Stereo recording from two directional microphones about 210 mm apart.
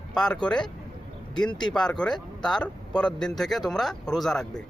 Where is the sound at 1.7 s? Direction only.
5° left (ahead or behind).